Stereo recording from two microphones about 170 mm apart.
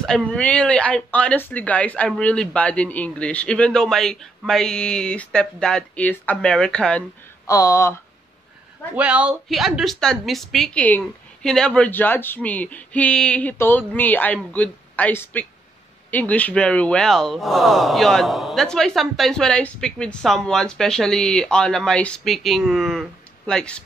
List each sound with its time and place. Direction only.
0.0 s speech: 5° left (ahead or behind)
7.4 s speech: 20° left (ahead or behind)
8.9 s speech: 5° right (ahead or behind)